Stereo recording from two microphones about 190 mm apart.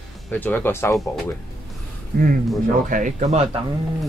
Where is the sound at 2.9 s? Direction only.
40° right (ahead or behind).